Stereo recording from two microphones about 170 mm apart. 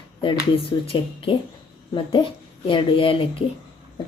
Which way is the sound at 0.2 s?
30° left (ahead or behind).